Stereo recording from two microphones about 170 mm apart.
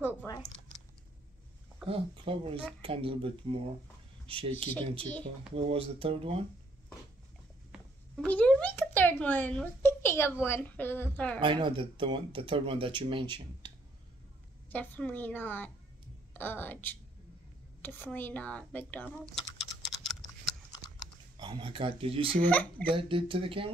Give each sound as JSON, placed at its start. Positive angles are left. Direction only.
{"t": 0.2, "sound": "a sound", "side_deg": 15}
{"t": 1.9, "sound": "speech", "side_deg": -35}
{"t": 8.2, "sound": "a sound", "side_deg": 10}
{"t": 10.4, "sound": "speech", "side_deg": 15}
{"t": 11.3, "sound": "speech", "side_deg": -30}
{"t": 14.7, "sound": "speech", "side_deg": 10}
{"t": 19.6, "sound": "typing", "side_deg": 0}
{"t": 21.4, "sound": "speech", "side_deg": -25}
{"t": 22.5, "sound": "speech", "side_deg": 10}
{"t": 22.8, "sound": "speech", "side_deg": -30}